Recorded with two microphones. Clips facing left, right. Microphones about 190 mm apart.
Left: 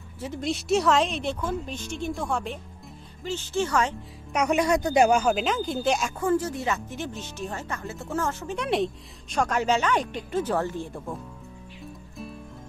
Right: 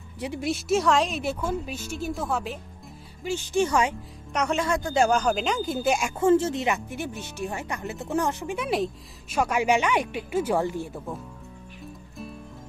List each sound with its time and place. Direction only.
0.2 s speech: 10° right (ahead or behind)
3.3 s a woman's voice: 15° right (ahead or behind)
4.3 s speech: 10° left (ahead or behind); by 6.1 s 10° right (ahead or behind)
6.1 s a woman's voice: 25° right (ahead or behind)
8.5 s a woman's voice: centre (ahead or behind)
11.8 s music: centre (ahead or behind)